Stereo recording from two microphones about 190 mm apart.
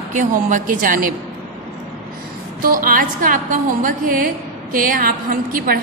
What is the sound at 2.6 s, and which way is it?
A woman's voice, 50° right (ahead or behind).